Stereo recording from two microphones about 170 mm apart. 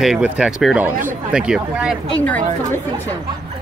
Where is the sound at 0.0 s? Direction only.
5° right (ahead or behind).